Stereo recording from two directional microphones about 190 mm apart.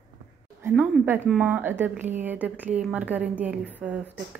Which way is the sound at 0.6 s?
10° right (ahead or behind).